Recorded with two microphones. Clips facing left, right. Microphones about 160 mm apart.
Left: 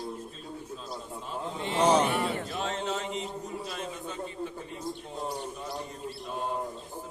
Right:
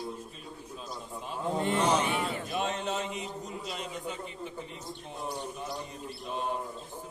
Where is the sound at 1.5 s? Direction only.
50° right (ahead or behind).